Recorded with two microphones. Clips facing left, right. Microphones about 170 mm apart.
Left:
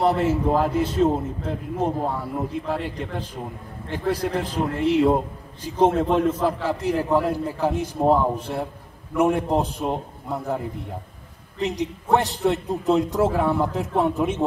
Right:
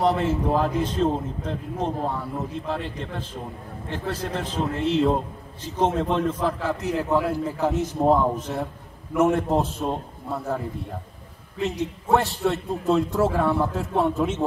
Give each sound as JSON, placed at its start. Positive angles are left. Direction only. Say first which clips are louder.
{"t": 0.0, "sound": "a man's voice", "louder": "left 2 dB", "side_deg": 10}
{"t": 11.8, "sound": "a man's voice", "louder": "even", "side_deg": 20}